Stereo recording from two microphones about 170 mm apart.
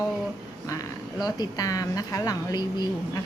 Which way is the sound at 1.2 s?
25° left (ahead or behind).